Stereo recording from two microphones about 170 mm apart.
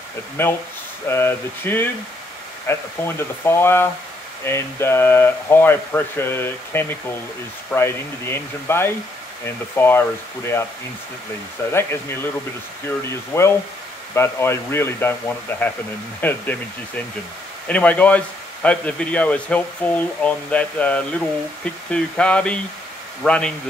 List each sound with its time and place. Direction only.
0.4 s speech: 10° left (ahead or behind)
11.7 s speech: 15° left (ahead or behind)
17.6 s speech: 10° left (ahead or behind)